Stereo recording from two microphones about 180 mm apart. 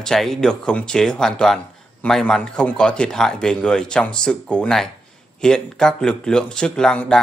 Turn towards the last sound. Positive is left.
turn(degrees=5)  # may be behind; listen again after turning